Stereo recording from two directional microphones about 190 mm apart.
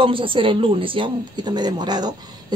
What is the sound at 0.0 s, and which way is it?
Speech, 25° right (ahead or behind).